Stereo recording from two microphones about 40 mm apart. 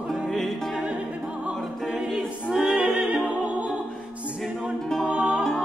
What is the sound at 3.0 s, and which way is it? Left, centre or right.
Music, centre.